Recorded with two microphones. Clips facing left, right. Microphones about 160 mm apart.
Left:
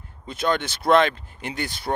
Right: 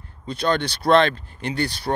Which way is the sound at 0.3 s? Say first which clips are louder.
Right 2 dB; 20° left (ahead or behind).